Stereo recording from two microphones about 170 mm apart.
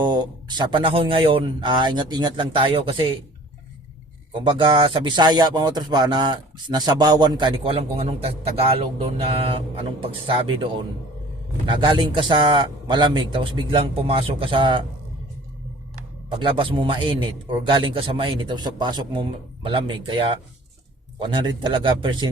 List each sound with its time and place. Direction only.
0.0 s speech: 25° right (ahead or behind)
4.3 s speech: 30° right (ahead or behind)
16.4 s speech: 30° right (ahead or behind)